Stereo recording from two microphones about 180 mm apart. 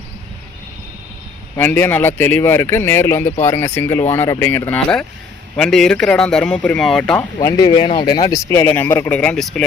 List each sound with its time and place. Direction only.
1.5 s speech: 10° left (ahead or behind)
7.3 s speech: 20° left (ahead or behind); by 9.6 s 5° left (ahead or behind)